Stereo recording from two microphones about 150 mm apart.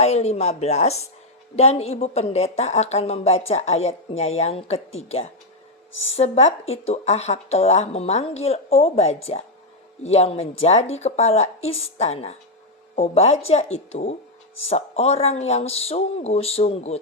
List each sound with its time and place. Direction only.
0.0 s speech: 45° left (ahead or behind)